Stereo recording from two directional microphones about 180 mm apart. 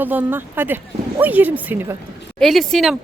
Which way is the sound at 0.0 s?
10° right (ahead or behind).